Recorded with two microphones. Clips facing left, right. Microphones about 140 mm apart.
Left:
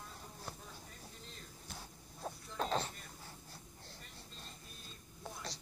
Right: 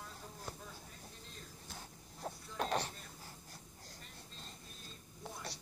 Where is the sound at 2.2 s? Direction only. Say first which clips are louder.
Even; 15° left (ahead or behind).